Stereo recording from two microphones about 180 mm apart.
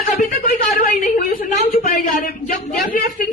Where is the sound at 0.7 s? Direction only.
45° left (ahead or behind).